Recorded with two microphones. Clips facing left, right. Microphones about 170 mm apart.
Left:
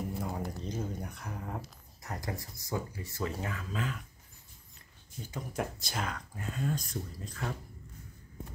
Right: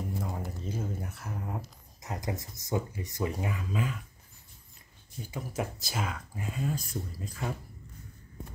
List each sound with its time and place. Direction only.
0.2 s a sound: centre (ahead or behind)
2.0 s speech: 20° right (ahead or behind)
5.2 s speech: 5° right (ahead or behind)